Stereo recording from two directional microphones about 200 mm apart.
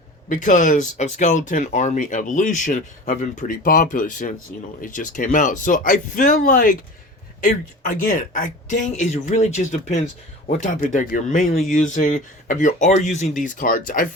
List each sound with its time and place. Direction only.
0.3 s speech: 40° left (ahead or behind)